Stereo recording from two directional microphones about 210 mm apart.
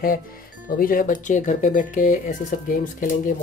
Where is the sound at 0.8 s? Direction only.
40° left (ahead or behind).